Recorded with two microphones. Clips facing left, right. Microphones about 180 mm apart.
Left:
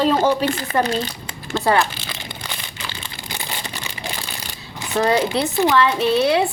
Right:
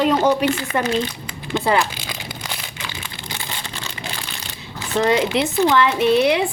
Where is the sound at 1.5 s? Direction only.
15° right (ahead or behind).